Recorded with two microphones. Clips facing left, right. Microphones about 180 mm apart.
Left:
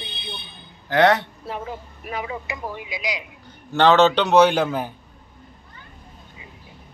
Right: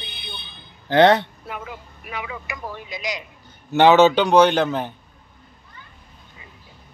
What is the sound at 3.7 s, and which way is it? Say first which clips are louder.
A man's voice: right 2 dB; 10° right (ahead or behind).